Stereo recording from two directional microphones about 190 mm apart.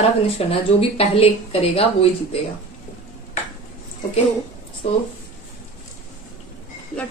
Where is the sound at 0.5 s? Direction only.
30° left (ahead or behind).